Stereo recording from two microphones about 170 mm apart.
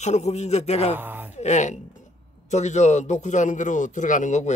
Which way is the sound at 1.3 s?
40° left (ahead or behind).